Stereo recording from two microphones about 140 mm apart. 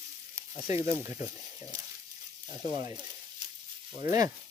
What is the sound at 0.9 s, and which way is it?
Speech, 20° right (ahead or behind).